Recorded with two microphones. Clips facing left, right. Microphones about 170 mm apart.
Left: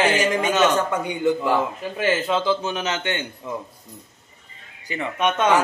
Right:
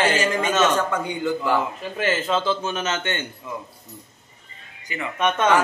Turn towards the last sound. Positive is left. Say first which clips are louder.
# even
turn(degrees=15)  # may be behind; listen again after turning